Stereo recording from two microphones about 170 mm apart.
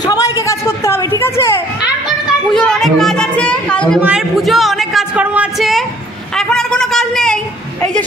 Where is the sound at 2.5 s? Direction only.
Centre (ahead or behind).